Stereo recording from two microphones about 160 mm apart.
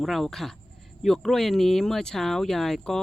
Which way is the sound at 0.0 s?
Centre (ahead or behind).